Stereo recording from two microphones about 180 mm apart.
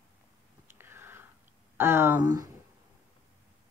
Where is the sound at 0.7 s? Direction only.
10° right (ahead or behind).